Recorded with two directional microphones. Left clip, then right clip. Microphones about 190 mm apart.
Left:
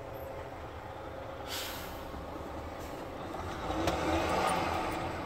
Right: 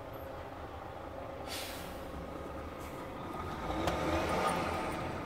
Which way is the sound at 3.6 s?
50° right (ahead or behind).